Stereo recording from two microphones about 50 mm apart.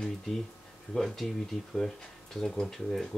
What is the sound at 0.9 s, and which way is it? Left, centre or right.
Speech, centre.